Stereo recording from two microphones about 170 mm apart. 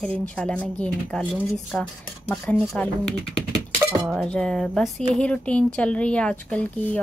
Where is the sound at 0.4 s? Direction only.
10° left (ahead or behind).